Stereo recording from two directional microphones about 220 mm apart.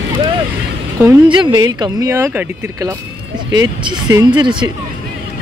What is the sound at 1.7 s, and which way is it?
Speech, 15° right (ahead or behind).